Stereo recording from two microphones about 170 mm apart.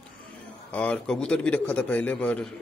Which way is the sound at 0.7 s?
5° left (ahead or behind).